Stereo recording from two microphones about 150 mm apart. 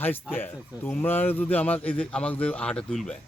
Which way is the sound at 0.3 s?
10° left (ahead or behind).